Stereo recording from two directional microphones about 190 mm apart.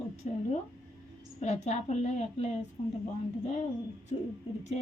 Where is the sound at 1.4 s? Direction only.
35° left (ahead or behind).